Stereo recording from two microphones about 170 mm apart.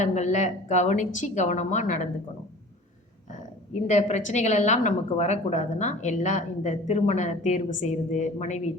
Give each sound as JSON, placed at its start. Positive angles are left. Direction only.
{"t": 0.0, "sound": "a woman's voice", "side_deg": 45}
{"t": 3.7, "sound": "a woman's voice", "side_deg": 45}